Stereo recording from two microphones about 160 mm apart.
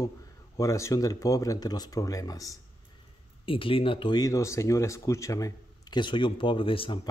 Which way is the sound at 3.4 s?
35° left (ahead or behind).